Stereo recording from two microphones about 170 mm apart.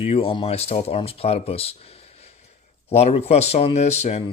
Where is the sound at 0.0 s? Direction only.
35° left (ahead or behind).